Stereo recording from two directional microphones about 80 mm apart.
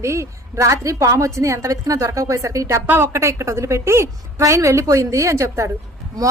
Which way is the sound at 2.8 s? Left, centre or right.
Right.